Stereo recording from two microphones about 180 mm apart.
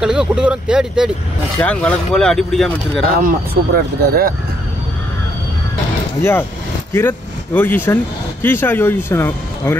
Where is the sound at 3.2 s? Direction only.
55° right (ahead or behind).